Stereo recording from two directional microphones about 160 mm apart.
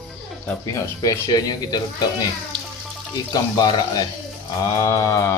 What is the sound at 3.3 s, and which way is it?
Speech, 25° left (ahead or behind).